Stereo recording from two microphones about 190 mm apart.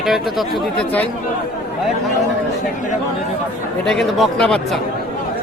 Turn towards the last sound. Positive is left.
turn(degrees=0)  # may be behind; listen again after turning